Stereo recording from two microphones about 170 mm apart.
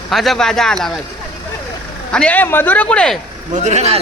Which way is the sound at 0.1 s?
Centre (ahead or behind).